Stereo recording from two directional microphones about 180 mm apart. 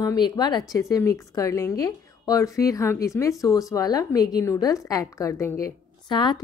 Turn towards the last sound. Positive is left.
turn(degrees=25)  # may be behind; listen again after turning